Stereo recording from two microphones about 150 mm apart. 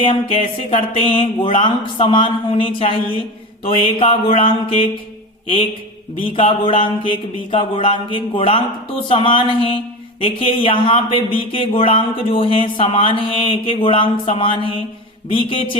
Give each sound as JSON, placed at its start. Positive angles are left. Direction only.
{"t": 0.0, "sound": "speech", "side_deg": 40}
{"t": 6.3, "sound": "speech", "side_deg": 35}